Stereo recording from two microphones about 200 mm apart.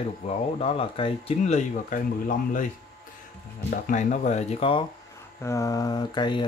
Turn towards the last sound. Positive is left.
turn(degrees=20)  # may be behind; listen again after turning